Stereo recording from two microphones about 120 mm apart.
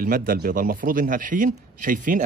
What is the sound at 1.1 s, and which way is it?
Speech, 90° right.